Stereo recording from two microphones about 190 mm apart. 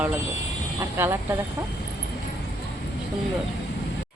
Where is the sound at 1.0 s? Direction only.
10° right (ahead or behind).